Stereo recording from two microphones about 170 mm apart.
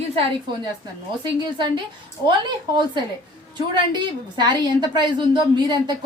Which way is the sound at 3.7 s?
25° right (ahead or behind).